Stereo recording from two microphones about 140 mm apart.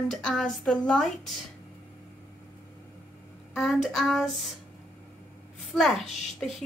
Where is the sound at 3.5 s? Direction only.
Centre (ahead or behind).